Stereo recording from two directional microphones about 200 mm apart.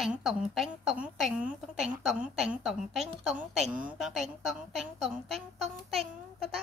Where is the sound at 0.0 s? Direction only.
Centre (ahead or behind).